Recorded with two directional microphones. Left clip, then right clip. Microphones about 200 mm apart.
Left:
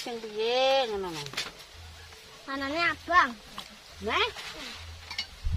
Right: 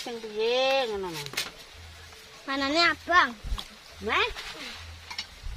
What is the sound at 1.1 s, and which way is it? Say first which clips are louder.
Speech: right 2 dB; 45° right (ahead or behind).